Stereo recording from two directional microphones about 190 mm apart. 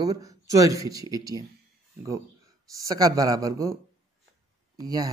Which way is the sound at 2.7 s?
20° right (ahead or behind).